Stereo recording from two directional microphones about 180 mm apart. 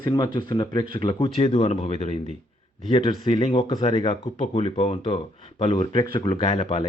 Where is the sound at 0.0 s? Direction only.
20° left (ahead or behind).